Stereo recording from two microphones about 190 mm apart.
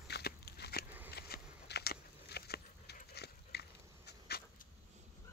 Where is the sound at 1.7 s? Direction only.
55° left (ahead or behind).